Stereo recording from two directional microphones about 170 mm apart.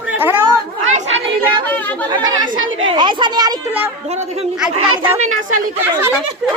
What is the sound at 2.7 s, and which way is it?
Speech, 30° right (ahead or behind).